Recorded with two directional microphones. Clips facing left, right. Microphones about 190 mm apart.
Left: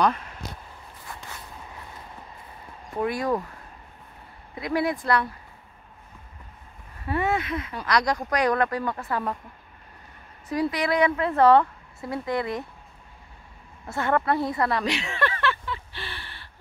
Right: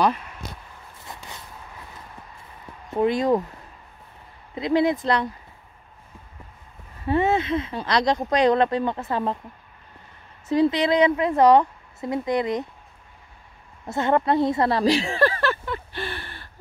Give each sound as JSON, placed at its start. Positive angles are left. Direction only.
{"t": 1.1, "sound": "a sound", "side_deg": -20}
{"t": 2.9, "sound": "speech", "side_deg": -20}
{"t": 4.6, "sound": "speech", "side_deg": -20}
{"t": 7.1, "sound": "speech", "side_deg": -25}
{"t": 10.5, "sound": "speech", "side_deg": -25}
{"t": 13.8, "sound": "a sound", "side_deg": -20}